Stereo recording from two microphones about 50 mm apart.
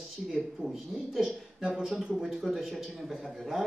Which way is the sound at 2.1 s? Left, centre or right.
Centre.